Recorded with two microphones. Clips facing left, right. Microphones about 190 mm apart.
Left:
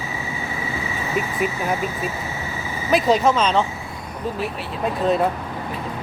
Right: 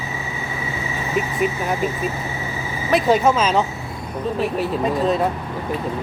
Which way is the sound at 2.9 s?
5° right (ahead or behind).